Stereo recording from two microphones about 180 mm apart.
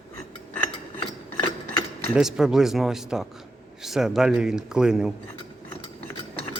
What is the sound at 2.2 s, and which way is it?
Speech, 5° right (ahead or behind).